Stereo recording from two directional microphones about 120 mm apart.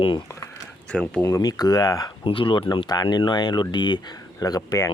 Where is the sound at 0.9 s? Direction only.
10° left (ahead or behind).